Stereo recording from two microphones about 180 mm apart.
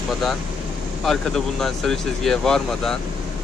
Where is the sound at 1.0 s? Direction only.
Centre (ahead or behind).